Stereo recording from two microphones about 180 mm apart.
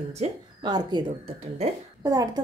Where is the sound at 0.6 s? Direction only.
25° right (ahead or behind).